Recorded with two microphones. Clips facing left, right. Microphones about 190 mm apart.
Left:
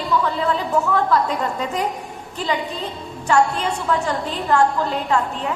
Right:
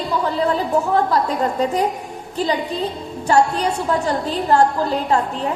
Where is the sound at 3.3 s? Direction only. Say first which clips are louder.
Right 2 dB; 35° right (ahead or behind).